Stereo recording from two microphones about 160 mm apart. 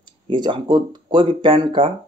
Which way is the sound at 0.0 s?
30° right (ahead or behind).